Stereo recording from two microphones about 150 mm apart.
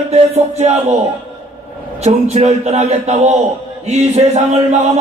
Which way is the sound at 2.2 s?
45° right (ahead or behind).